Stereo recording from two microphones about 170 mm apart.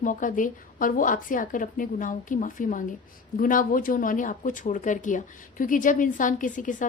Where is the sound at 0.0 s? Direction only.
50° left (ahead or behind).